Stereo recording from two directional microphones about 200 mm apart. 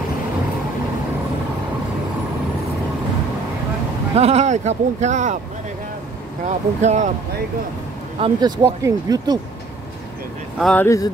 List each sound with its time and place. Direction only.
4.1 s speech: 30° right (ahead or behind)
6.4 s speech: 35° right (ahead or behind)
8.2 s speech: 20° right (ahead or behind)
10.6 s speech: 5° left (ahead or behind)